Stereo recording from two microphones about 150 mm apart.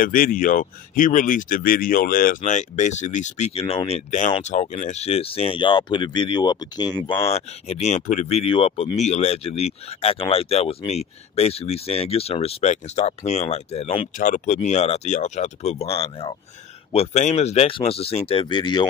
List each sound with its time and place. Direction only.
0.0 s speech: 70° left (ahead or behind); by 7.0 s 25° left (ahead or behind)
7.2 s speech: 45° left (ahead or behind)
14.1 s speech: 60° left (ahead or behind); by 18.9 s 30° left (ahead or behind)